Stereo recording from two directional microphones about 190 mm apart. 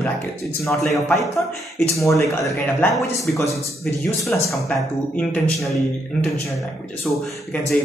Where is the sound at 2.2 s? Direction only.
5° left (ahead or behind).